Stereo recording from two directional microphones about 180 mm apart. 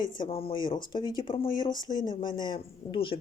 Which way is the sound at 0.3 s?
30° left (ahead or behind).